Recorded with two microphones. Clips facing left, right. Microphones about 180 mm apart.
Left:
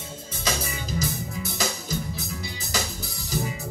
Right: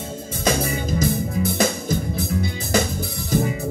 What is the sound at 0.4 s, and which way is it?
Music, 55° right (ahead or behind).